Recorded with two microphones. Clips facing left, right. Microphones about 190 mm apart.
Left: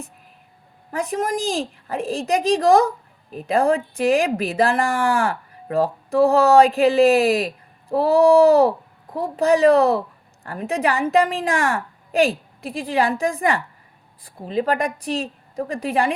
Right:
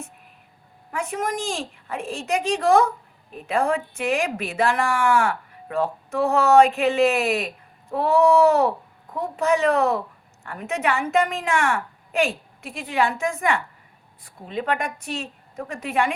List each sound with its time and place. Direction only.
0.9 s a woman's voice: 35° left (ahead or behind)